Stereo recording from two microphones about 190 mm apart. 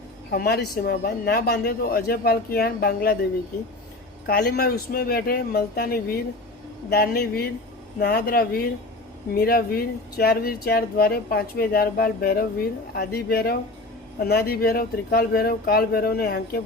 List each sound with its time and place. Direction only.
0.3 s a woman's voice: 55° left (ahead or behind)
4.3 s a woman's voice: 55° left (ahead or behind)